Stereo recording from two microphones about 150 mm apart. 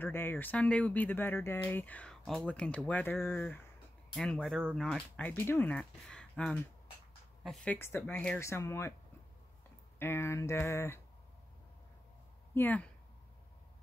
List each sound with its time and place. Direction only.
0.0 s speech: 15° left (ahead or behind)
9.9 s speech: 15° left (ahead or behind)
12.5 s speech: 10° left (ahead or behind)